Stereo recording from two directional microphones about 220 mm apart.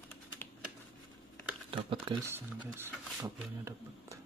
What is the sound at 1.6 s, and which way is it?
Speech, 25° right (ahead or behind).